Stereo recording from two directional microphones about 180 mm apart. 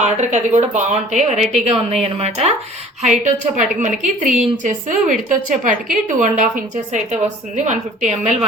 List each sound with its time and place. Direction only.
0.0 s a woman's voice: 40° right (ahead or behind)